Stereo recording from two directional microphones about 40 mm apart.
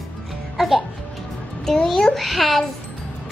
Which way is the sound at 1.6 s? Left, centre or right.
Centre.